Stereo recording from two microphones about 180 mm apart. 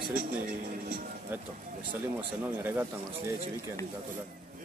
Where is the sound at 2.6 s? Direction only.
10° right (ahead or behind).